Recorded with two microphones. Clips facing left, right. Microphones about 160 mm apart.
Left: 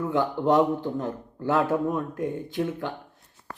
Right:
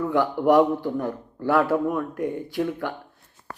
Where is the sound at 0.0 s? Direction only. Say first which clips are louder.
Right 3 dB; 20° left (ahead or behind).